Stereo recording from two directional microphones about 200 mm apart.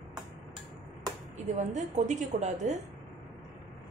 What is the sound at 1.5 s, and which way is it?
A woman's voice, 35° right (ahead or behind).